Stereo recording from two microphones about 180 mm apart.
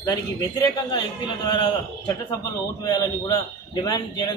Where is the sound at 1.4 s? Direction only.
25° left (ahead or behind).